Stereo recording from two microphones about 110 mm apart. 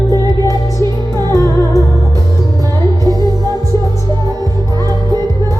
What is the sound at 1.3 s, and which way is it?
Music, 30° left (ahead or behind).